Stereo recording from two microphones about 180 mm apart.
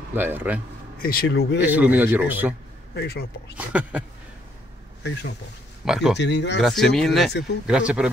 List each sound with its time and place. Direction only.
0.1 s a man's voice: 10° right (ahead or behind)
0.9 s speech: 55° left (ahead or behind)
1.6 s a man's voice: 10° right (ahead or behind)
3.0 s speech: 60° left (ahead or behind)
3.5 s a man's voice: 10° right (ahead or behind)
5.9 s speech: centre (ahead or behind)
6.1 s speech: 75° left (ahead or behind)
6.6 s speech: centre (ahead or behind)